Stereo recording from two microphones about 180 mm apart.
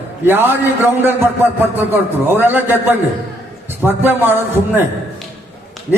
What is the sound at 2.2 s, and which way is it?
Speech, 10° right (ahead or behind).